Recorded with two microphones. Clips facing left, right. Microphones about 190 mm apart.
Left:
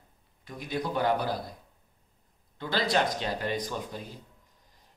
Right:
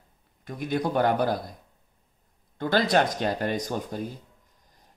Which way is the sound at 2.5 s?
50° right (ahead or behind).